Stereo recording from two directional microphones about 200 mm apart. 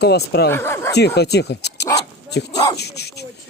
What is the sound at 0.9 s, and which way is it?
Speech, 55° left (ahead or behind).